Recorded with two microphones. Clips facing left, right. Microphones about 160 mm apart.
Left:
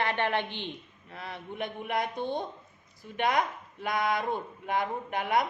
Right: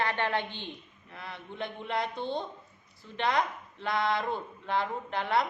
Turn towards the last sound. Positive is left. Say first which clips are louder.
# left 1 dB
turn(degrees=20)  # may be behind; listen again after turning